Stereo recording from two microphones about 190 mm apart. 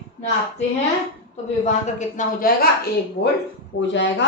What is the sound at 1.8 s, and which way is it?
Speech, 45° left (ahead or behind).